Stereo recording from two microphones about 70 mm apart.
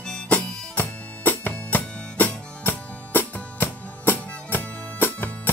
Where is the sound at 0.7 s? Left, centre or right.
Left.